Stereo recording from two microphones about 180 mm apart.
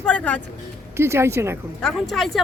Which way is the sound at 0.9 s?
15° right (ahead or behind).